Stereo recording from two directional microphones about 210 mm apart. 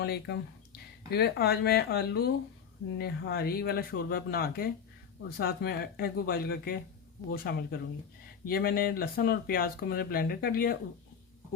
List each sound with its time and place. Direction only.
0.0 s speech: 50° left (ahead or behind)